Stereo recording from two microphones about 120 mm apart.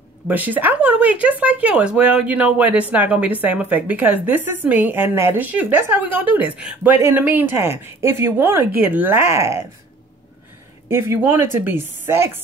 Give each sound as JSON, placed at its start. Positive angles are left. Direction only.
{"t": 0.3, "sound": "speech", "side_deg": -15}
{"t": 10.9, "sound": "speech", "side_deg": -20}